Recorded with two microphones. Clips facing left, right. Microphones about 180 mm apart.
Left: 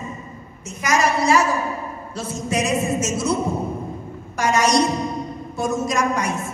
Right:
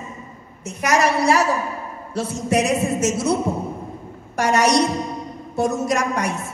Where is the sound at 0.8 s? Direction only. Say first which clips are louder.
Right 1 dB; 65° right (ahead or behind).